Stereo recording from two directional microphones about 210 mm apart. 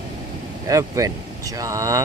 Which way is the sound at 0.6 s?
15° right (ahead or behind).